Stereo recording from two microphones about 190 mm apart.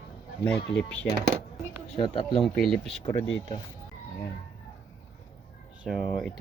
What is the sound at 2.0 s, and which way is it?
Speech, 25° left (ahead or behind).